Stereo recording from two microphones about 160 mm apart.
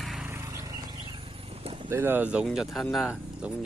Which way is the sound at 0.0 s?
Centre (ahead or behind).